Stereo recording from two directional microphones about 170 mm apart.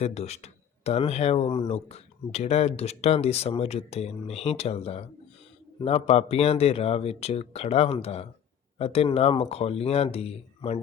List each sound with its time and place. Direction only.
0.0 s speech: 40° left (ahead or behind)